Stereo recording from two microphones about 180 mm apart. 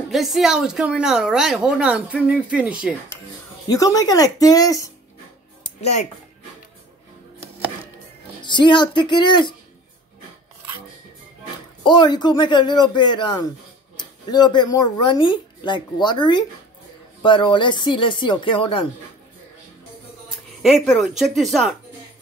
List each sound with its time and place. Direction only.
0.1 s a woman's voice: centre (ahead or behind)
3.6 s speech: 20° left (ahead or behind)
5.8 s speech: 35° left (ahead or behind)
8.4 s speech: 25° left (ahead or behind)
11.8 s speech: 25° left (ahead or behind)
20.8 s a woman's voice: centre (ahead or behind)